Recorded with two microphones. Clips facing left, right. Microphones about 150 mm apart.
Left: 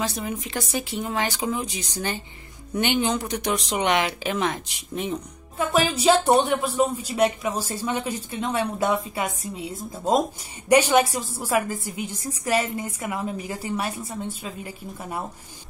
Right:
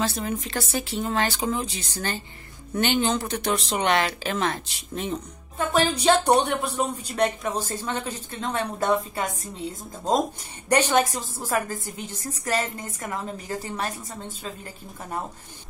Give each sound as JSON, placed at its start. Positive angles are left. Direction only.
{"t": 0.0, "sound": "speech", "side_deg": 15}